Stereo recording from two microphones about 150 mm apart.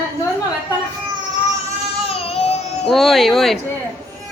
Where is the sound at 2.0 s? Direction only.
45° left (ahead or behind).